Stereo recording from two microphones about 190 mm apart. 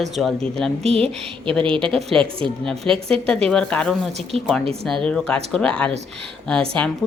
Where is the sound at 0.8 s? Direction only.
30° right (ahead or behind).